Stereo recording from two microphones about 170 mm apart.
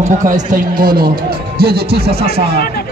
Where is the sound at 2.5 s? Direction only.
65° left (ahead or behind).